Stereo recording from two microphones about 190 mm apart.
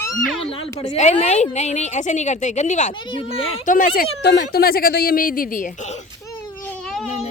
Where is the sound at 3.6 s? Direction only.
45° left (ahead or behind).